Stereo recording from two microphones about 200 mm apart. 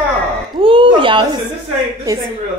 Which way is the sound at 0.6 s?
25° right (ahead or behind).